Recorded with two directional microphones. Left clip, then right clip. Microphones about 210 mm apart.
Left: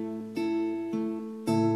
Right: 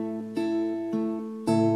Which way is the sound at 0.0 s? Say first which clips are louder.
Right 2 dB; 10° right (ahead or behind).